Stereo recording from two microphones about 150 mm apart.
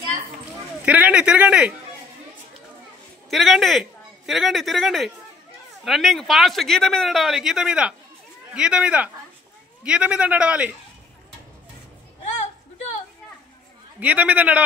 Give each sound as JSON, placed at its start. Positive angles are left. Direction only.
{"t": 0.8, "sound": "speech", "side_deg": -10}
{"t": 3.3, "sound": "speech", "side_deg": 0}
{"t": 12.3, "sound": "a sound", "side_deg": 55}
{"t": 13.9, "sound": "speech", "side_deg": -10}